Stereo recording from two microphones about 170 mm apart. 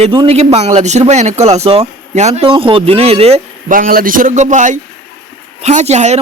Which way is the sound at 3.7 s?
55° right (ahead or behind).